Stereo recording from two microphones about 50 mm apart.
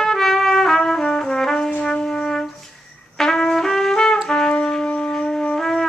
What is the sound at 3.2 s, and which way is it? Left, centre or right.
Trumpet, centre.